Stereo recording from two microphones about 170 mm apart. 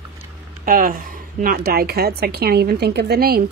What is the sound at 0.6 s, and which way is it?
Speech, 55° right (ahead or behind).